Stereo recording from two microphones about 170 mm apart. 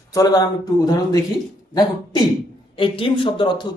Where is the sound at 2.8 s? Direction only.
30° left (ahead or behind).